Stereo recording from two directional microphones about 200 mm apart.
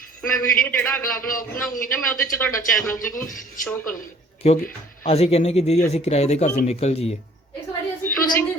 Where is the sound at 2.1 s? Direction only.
10° left (ahead or behind).